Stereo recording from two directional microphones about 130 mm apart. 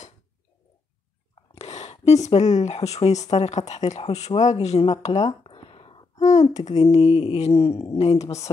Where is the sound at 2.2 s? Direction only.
60° left (ahead or behind).